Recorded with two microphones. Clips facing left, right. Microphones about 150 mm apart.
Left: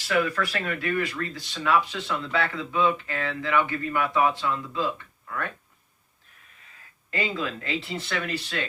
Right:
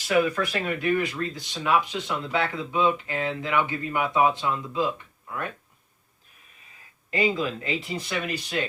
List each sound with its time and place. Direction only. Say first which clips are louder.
0.1 s speech: right 2 dB; 20° right (ahead or behind)
7.1 s speech: right 4 dB; 15° right (ahead or behind)